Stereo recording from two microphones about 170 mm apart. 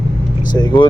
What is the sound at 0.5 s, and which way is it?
Speech, 25° left (ahead or behind).